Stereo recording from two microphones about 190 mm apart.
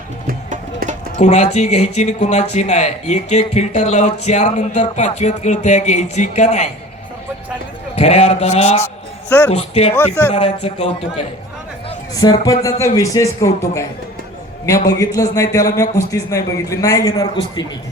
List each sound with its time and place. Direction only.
0.3 s music: 45° right (ahead or behind)
1.2 s speech: 35° left (ahead or behind)
7.9 s speech: 35° left (ahead or behind)
12.1 s a man's voice: 20° left (ahead or behind)
14.7 s a man's voice: 20° left (ahead or behind)